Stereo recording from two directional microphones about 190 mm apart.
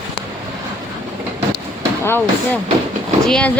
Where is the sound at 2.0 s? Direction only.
10° left (ahead or behind).